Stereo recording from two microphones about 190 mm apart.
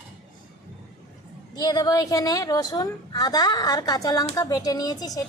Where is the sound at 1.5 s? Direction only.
20° left (ahead or behind).